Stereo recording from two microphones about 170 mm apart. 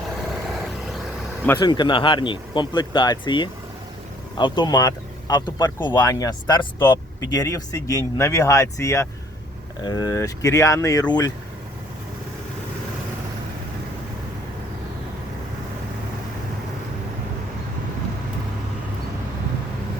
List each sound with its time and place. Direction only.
1.5 s speech: 25° left (ahead or behind)